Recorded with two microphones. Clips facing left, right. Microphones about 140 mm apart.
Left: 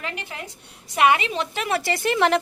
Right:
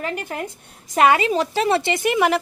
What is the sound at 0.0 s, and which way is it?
A woman's voice, 45° right (ahead or behind).